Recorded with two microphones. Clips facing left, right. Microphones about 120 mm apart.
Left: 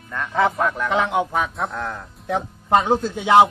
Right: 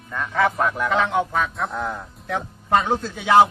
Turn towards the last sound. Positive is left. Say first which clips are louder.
# left 1 dB
turn(degrees=15)  # may be behind; listen again after turning